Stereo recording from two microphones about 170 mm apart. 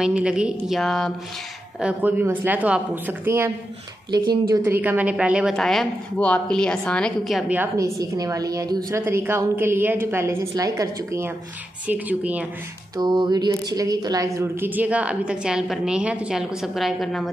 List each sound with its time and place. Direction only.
0.0 s a woman's voice: 5° right (ahead or behind)
1.8 s a woman's voice: 10° right (ahead or behind)
4.6 s a woman's voice: 10° right (ahead or behind)
12.9 s music: 25° right (ahead or behind)
13.5 s a woman's voice: 20° right (ahead or behind); by 17.3 s centre (ahead or behind)